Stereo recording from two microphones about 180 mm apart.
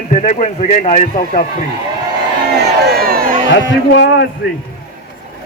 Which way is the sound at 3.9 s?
80° left.